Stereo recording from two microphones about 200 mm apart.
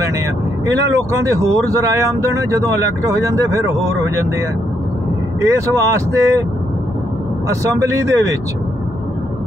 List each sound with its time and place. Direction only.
1.2 s speech: 15° right (ahead or behind)
5.4 s speech: 15° right (ahead or behind)
7.8 s speech: 15° right (ahead or behind)